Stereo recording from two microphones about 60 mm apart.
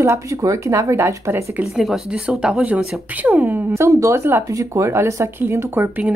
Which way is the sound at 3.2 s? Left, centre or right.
Right.